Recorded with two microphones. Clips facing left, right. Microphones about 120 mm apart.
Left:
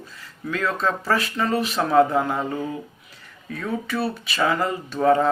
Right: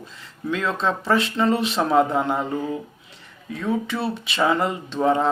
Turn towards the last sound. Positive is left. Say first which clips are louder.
# left 2 dB
turn(degrees=-20)  # may be behind; listen again after turning